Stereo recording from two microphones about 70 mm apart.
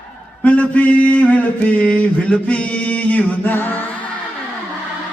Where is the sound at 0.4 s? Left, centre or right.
Centre.